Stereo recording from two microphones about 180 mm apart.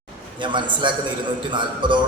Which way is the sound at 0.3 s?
25° right (ahead or behind).